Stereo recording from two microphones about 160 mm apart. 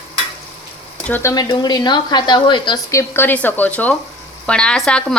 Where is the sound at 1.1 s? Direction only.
15° left (ahead or behind).